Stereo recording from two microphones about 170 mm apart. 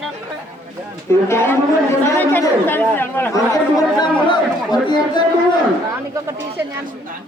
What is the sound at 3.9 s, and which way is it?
Speech, 25° left (ahead or behind).